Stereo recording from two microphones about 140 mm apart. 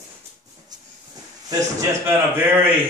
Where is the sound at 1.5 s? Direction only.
20° right (ahead or behind).